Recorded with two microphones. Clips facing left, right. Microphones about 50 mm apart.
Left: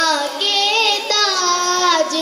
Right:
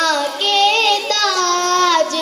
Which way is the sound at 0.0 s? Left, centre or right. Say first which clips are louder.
Right 1 dB; right.